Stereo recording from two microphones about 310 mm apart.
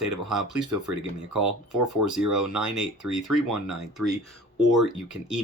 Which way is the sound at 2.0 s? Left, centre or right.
Centre.